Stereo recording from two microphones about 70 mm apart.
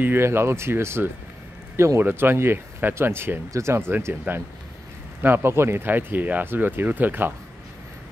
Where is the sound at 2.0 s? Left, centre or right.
Right.